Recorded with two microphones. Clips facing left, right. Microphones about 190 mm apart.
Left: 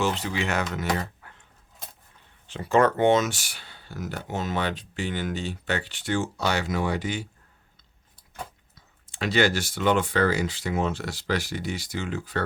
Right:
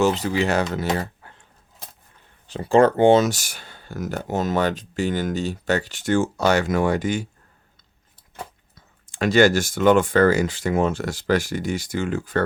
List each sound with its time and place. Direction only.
0.0 s speech: 40° right (ahead or behind)
2.5 s speech: 30° right (ahead or behind); by 7.3 s 45° right (ahead or behind)
9.0 s speech: 45° right (ahead or behind)